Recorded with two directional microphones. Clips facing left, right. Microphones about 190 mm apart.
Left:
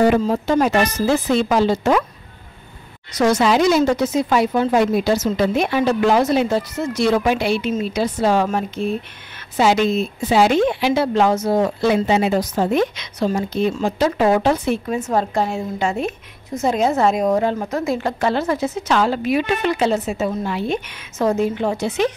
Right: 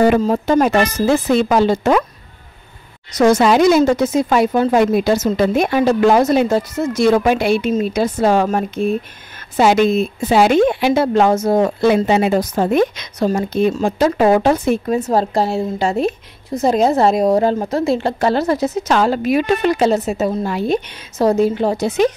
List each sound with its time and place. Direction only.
0.2 s speech: 50° right (ahead or behind)
3.1 s a woman's voice: 45° right (ahead or behind)